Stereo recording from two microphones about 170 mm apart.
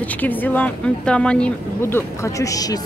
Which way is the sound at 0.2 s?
10° left (ahead or behind).